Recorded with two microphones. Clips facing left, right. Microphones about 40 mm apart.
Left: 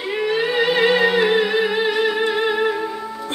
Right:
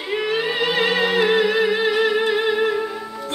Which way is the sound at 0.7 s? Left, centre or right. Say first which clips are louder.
Left 2 dB; centre.